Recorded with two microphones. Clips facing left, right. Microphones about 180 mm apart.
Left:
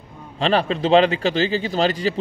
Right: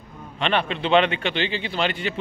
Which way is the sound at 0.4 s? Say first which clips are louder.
Left 4 dB; 35° left (ahead or behind).